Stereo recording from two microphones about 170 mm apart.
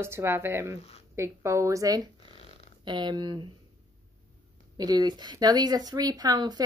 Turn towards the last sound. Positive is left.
turn(degrees=-25)  # may be behind; listen again after turning